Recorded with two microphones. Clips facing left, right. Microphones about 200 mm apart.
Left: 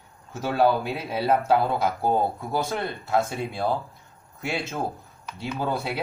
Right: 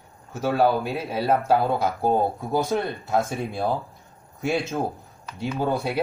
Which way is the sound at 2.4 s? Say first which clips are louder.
Right 4 dB; 15° right (ahead or behind).